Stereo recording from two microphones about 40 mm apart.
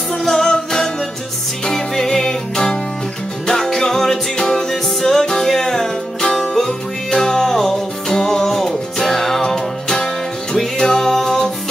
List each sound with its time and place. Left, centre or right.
0.2 s music: centre